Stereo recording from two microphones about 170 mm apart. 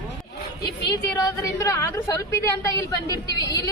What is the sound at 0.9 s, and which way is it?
A woman's voice, 20° left (ahead or behind).